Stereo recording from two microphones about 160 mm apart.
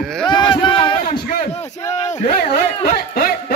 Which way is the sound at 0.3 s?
30° left (ahead or behind).